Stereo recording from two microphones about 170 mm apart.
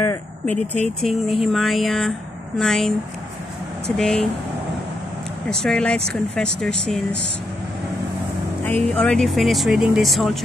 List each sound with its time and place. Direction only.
0.0 s vehicle: 10° left (ahead or behind)
1.4 s speech: centre (ahead or behind)
3.9 s speech: 5° left (ahead or behind)
5.6 s speech: 5° left (ahead or behind)
8.6 s speech: 10° left (ahead or behind)